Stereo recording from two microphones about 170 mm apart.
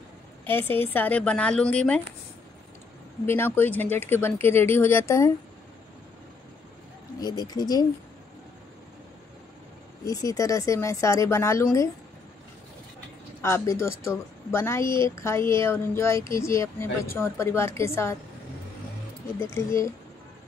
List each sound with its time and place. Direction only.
0.5 s speech: 10° left (ahead or behind)
3.3 s speech: 10° left (ahead or behind)
7.2 s speech: 25° left (ahead or behind)
10.0 s speech: 20° left (ahead or behind)
13.4 s speech: 15° left (ahead or behind)
19.4 s speech: 15° left (ahead or behind)